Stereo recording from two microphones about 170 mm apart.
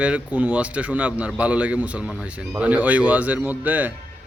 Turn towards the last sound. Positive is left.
turn(degrees=-10)  # may be behind; listen again after turning